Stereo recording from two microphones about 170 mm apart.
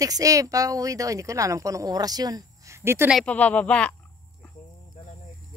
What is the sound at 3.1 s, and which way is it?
Speech, 5° left (ahead or behind).